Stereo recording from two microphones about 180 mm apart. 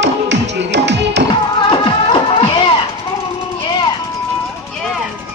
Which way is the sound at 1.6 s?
30° left (ahead or behind).